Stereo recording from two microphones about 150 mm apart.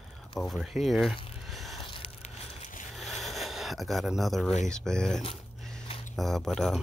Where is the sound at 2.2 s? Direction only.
55° left (ahead or behind).